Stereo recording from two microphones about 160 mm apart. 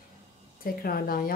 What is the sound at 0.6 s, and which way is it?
Speech, 65° left (ahead or behind).